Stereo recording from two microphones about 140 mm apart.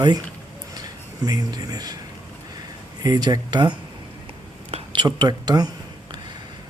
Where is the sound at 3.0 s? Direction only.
30° right (ahead or behind).